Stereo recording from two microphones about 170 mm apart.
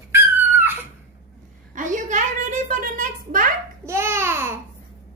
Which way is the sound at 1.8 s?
50° right (ahead or behind).